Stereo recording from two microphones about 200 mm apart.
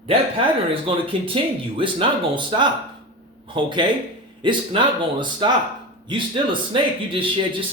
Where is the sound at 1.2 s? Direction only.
25° right (ahead or behind).